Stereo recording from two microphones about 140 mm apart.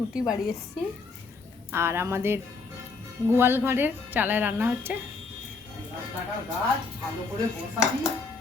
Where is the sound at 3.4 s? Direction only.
15° right (ahead or behind).